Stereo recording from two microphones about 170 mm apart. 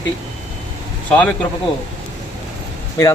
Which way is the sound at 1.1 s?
10° left (ahead or behind).